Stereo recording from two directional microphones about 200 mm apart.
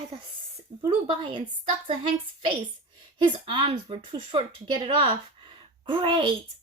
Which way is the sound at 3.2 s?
25° right (ahead or behind).